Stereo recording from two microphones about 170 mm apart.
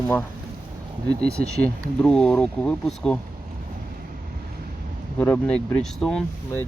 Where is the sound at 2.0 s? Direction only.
5° left (ahead or behind).